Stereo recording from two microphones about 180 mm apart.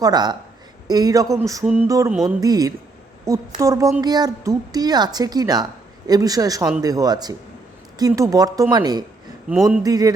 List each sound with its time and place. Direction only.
0.0 s a woman's voice: 25° right (ahead or behind)
1.6 s a woman's voice: 5° right (ahead or behind)
1.9 s a woman's voice: 20° right (ahead or behind)
9.5 s a sound: centre (ahead or behind)
9.8 s a woman's voice: 20° right (ahead or behind)